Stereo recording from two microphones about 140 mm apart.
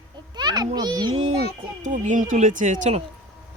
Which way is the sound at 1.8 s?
65° right (ahead or behind).